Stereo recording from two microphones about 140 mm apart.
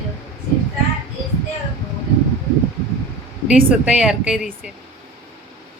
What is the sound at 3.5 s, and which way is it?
Speech, 10° right (ahead or behind).